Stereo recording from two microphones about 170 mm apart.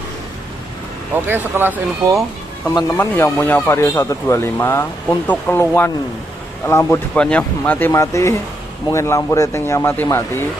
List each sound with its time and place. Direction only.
1.1 s speech: 10° right (ahead or behind)
2.9 s speech: 15° left (ahead or behind)